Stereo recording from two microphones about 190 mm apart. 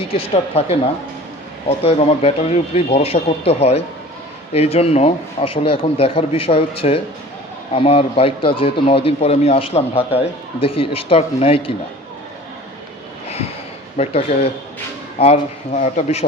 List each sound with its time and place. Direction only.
0.0 s a man's voice: 30° left (ahead or behind)
13.9 s speech: 30° left (ahead or behind)